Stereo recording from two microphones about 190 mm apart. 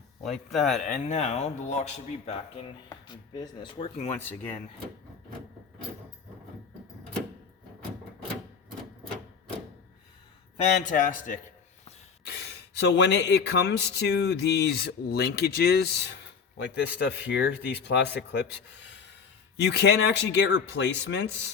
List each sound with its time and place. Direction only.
0.2 s speech: centre (ahead or behind)
1.0 s speech: 35° left (ahead or behind)
3.1 s speech: 20° left (ahead or behind)
4.1 s speech: 10° left (ahead or behind)
10.6 s a man's voice: 40° left (ahead or behind)
12.2 s speech: 60° left (ahead or behind)